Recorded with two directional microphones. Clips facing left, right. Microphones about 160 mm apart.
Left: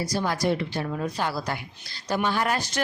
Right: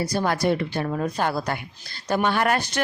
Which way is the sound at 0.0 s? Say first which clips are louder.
Right 3 dB; 60° right (ahead or behind).